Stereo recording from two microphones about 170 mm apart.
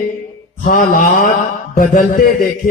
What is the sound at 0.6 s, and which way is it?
Mantra, 50° left (ahead or behind).